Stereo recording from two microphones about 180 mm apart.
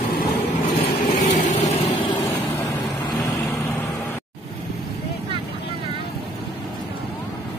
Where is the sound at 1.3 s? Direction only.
40° left (ahead or behind).